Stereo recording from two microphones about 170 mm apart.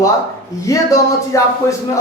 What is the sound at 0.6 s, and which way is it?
Speech, 20° left (ahead or behind).